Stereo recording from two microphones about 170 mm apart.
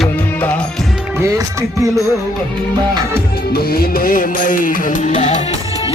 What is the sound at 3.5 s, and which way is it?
Music, 60° left (ahead or behind).